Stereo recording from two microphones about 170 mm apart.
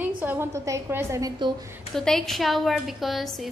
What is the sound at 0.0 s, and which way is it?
A woman's voice, 10° right (ahead or behind).